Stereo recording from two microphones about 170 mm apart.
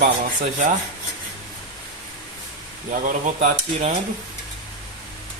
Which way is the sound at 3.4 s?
45° right (ahead or behind).